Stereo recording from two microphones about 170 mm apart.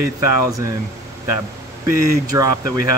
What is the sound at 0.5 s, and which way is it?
Speech, 20° right (ahead or behind).